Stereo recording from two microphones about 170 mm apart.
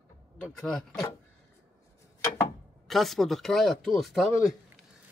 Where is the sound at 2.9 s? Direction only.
Centre (ahead or behind).